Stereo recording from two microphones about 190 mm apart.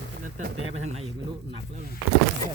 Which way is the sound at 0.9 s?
25° right (ahead or behind).